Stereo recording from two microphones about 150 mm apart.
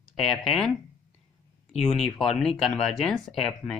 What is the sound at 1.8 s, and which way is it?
Speech, centre (ahead or behind).